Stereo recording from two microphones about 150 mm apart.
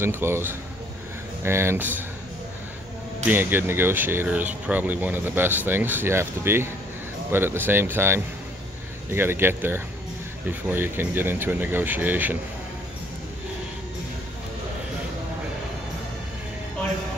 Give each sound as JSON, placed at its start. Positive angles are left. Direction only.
{"t": 0.0, "sound": "speech", "side_deg": -15}
{"t": 3.3, "sound": "speech", "side_deg": -15}